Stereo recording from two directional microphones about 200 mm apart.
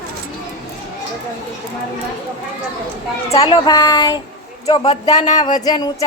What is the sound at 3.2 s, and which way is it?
Speech, 15° left (ahead or behind).